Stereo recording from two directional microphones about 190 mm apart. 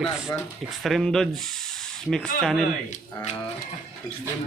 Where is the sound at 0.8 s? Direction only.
Centre (ahead or behind).